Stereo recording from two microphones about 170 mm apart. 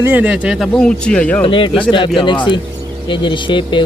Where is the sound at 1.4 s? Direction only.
30° left (ahead or behind).